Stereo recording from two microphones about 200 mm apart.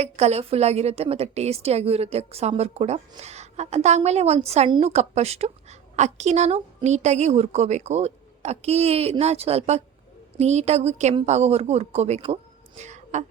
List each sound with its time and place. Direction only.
0.0 s a woman's voice: 30° right (ahead or behind)